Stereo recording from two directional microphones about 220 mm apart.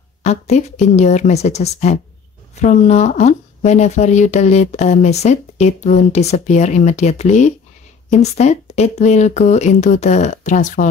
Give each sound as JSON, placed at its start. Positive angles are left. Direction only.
{"t": 0.2, "sound": "speech", "side_deg": 30}